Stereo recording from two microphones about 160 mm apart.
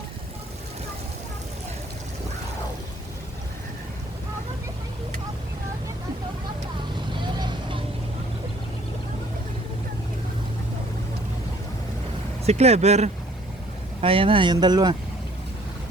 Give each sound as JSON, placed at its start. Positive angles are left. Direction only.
{"t": 6.9, "sound": "vehicle", "side_deg": -30}
{"t": 12.5, "sound": "speech", "side_deg": -40}